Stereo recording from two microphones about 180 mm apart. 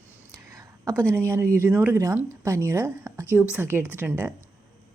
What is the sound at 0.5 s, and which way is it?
Whispering, 20° right (ahead or behind).